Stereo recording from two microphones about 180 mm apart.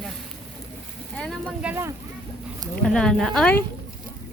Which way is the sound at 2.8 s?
5° left (ahead or behind).